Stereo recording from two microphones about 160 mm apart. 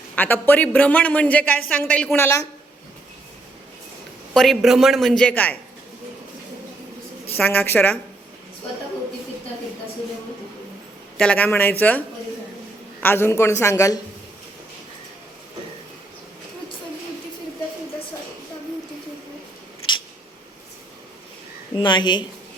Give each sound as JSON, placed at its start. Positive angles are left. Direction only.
{"t": 0.2, "sound": "a woman's voice", "side_deg": 10}
{"t": 4.4, "sound": "a man's voice", "side_deg": 0}
{"t": 7.3, "sound": "a woman's voice", "side_deg": 10}
{"t": 11.2, "sound": "a woman's voice", "side_deg": 10}
{"t": 21.8, "sound": "a woman's voice", "side_deg": 30}